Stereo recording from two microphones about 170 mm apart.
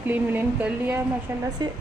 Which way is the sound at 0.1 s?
10° right (ahead or behind).